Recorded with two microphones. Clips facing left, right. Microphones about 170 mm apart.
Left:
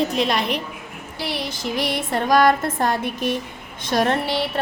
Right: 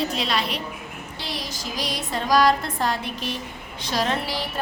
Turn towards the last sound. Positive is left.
turn(degrees=65)  # may be behind; listen again after turning